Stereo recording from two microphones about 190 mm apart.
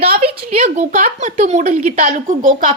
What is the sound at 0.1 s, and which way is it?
A woman's voice, 35° right (ahead or behind).